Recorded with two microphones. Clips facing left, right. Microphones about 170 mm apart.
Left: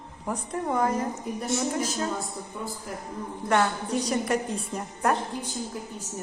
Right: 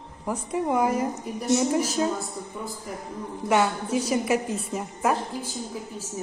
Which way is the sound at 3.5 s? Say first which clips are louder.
Right 2 dB; 5° right (ahead or behind).